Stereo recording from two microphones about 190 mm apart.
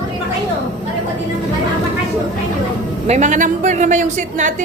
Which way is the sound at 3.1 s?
40° right (ahead or behind).